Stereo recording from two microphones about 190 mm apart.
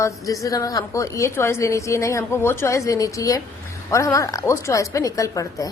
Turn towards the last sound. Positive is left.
turn(degrees=15)  # may be behind; listen again after turning